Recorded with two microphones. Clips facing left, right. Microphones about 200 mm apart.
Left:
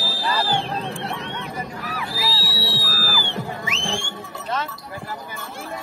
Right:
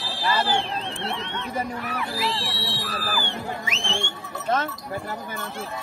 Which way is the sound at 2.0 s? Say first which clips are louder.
Even; centre (ahead or behind).